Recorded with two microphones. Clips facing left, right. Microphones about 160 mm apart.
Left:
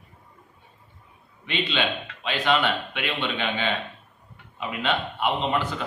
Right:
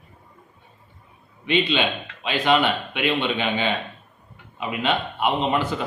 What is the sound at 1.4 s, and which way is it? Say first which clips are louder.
A man's voice: right 5 dB; 15° right (ahead or behind).